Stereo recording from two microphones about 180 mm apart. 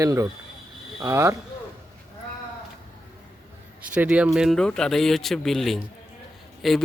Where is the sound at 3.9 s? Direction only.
5° right (ahead or behind).